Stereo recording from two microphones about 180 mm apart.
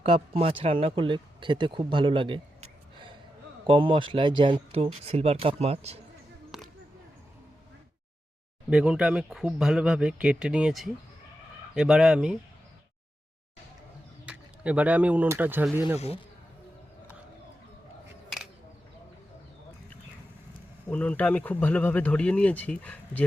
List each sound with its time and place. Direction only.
0.0 s speech: 30° right (ahead or behind)
6.5 s a sound: centre (ahead or behind)
8.7 s speech: 5° right (ahead or behind)
14.3 s speech: 5° right (ahead or behind)
16.0 s a man's voice: 35° left (ahead or behind)
20.8 s speech: 5° left (ahead or behind)